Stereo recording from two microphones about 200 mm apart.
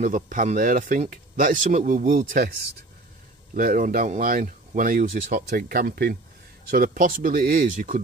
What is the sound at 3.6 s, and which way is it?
Speech, 40° right (ahead or behind).